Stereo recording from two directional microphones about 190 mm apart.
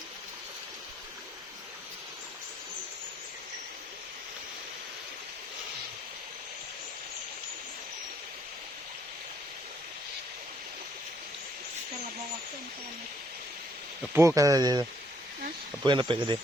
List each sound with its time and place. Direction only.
14.1 s speech: 15° right (ahead or behind)